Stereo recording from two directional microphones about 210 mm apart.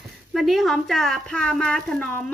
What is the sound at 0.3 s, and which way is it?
A woman's voice, centre (ahead or behind).